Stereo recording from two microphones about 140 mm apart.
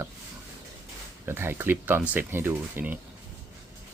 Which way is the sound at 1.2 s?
15° right (ahead or behind).